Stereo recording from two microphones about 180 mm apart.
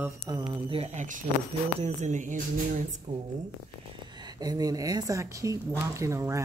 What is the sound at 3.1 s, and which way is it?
Speech, 30° right (ahead or behind).